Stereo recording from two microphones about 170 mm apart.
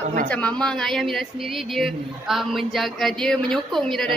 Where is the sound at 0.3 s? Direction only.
10° left (ahead or behind).